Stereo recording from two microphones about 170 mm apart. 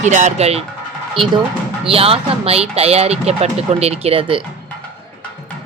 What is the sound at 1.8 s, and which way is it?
Speech, 35° right (ahead or behind).